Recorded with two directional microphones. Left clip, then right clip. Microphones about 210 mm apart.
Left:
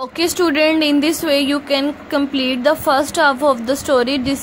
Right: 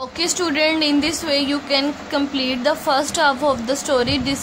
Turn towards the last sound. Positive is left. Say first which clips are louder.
# left 3 dB
turn(degrees=25)  # may be behind; listen again after turning